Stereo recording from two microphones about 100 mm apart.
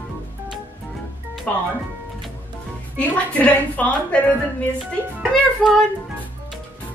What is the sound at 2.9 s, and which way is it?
A woman's voice, 15° left (ahead or behind).